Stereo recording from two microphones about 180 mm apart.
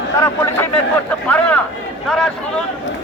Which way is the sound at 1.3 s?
10° left (ahead or behind).